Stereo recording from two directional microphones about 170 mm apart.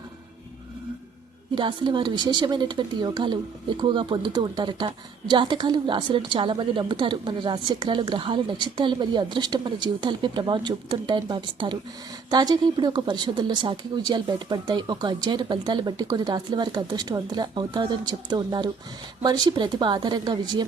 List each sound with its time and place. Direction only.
1.5 s speech: 30° right (ahead or behind)